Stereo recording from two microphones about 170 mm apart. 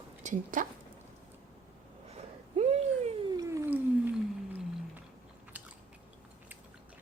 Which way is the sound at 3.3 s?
20° right (ahead or behind).